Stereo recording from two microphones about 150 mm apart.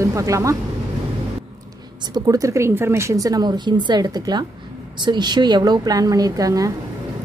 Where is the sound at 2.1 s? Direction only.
25° right (ahead or behind).